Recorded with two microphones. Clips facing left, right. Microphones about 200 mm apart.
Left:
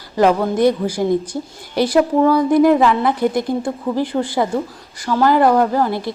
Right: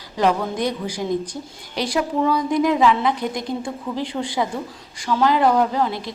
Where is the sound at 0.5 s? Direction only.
10° left (ahead or behind).